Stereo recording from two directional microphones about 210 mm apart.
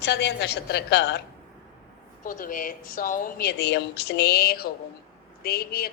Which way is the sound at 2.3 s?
40° left (ahead or behind).